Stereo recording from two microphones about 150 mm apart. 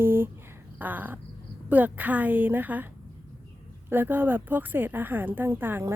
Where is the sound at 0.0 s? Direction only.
15° right (ahead or behind).